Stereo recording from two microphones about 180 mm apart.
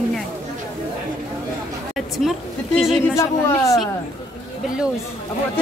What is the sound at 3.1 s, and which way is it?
Speech, 15° left (ahead or behind).